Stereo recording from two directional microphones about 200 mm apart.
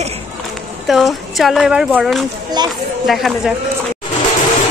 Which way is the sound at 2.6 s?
20° right (ahead or behind).